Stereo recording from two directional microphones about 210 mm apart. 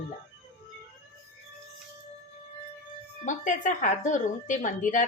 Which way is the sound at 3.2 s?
35° left (ahead or behind).